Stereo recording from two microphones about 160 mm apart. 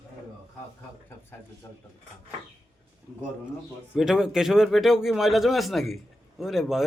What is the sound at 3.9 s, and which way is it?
Speech, 5° right (ahead or behind).